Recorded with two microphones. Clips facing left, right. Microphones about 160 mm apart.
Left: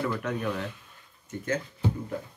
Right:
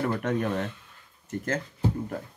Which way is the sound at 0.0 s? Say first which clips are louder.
Right 3 dB; 50° right (ahead or behind).